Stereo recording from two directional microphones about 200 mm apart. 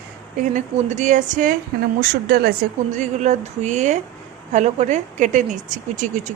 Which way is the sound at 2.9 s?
35° right (ahead or behind).